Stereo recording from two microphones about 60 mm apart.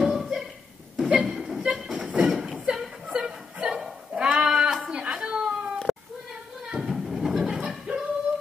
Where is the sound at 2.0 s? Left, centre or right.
Centre.